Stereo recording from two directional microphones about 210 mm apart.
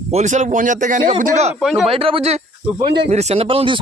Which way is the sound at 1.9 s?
25° right (ahead or behind).